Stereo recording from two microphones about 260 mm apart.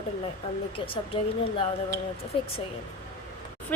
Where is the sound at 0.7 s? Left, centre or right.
Left.